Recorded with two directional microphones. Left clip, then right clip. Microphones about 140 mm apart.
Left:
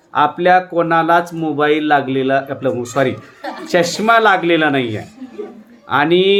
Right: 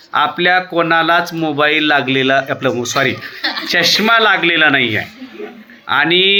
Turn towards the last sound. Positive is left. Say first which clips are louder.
# right 1 dB
turn(degrees=5)  # may be behind; listen again after turning